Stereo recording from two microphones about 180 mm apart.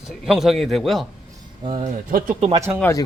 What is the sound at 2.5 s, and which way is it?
Speech, 15° right (ahead or behind).